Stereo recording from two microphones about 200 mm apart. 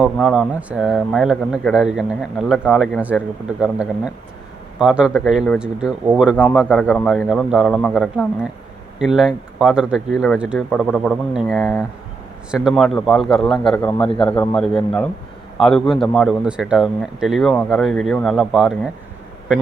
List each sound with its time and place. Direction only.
0.0 s speech: centre (ahead or behind)
6.3 s speech: 5° left (ahead or behind)